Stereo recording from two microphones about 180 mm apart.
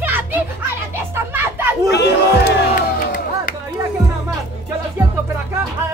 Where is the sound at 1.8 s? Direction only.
65° left (ahead or behind); by 3.5 s 50° left (ahead or behind).